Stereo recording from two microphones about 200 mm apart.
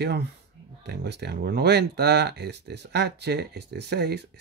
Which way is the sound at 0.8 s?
55° right (ahead or behind).